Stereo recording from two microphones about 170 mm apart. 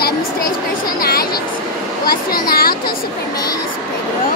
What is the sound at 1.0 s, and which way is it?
Speech, 65° left (ahead or behind).